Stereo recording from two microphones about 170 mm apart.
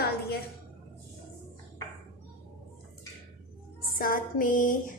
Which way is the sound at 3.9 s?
55° left (ahead or behind).